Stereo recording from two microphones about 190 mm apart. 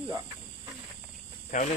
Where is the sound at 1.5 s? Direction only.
40° left (ahead or behind).